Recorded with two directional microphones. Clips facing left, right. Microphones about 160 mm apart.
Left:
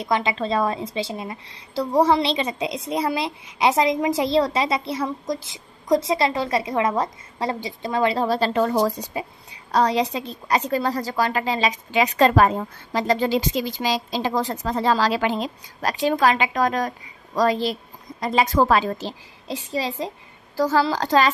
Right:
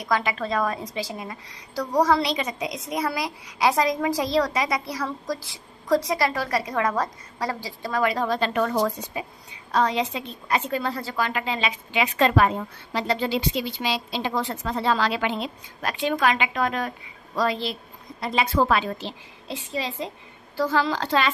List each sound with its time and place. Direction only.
0.0 s a woman's voice: 25° left (ahead or behind)